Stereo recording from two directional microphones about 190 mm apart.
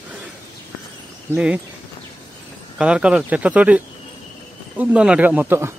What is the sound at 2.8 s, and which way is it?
Speech, 5° right (ahead or behind).